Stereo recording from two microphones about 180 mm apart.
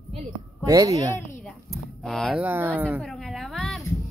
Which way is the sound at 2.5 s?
10° right (ahead or behind).